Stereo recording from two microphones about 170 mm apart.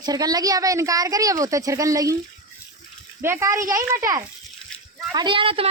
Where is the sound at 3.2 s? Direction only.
15° right (ahead or behind); by 5.6 s 30° right (ahead or behind).